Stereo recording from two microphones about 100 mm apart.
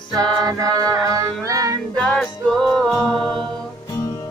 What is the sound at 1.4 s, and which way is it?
Music, 35° right (ahead or behind).